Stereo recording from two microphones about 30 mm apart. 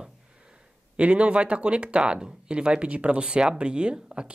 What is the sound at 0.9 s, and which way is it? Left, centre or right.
Speech, right.